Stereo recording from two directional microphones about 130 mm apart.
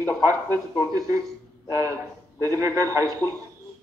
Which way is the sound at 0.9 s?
25° right (ahead or behind).